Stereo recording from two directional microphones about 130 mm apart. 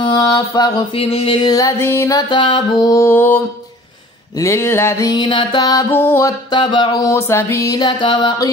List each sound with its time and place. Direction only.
0.2 s mantra: 30° left (ahead or behind)
0.9 s mantra: 45° left (ahead or behind); by 1.7 s 30° left (ahead or behind)
1.9 s music: 25° left (ahead or behind)
2.2 s mantra: 40° left (ahead or behind); by 3.3 s 15° left (ahead or behind)
4.4 s music: 20° left (ahead or behind)
5.1 s mantra: 35° left (ahead or behind)
5.9 s music: 15° left (ahead or behind)
6.5 s mantra: 35° left (ahead or behind)
7.0 s music: 20° left (ahead or behind)
7.8 s mantra: 40° left (ahead or behind)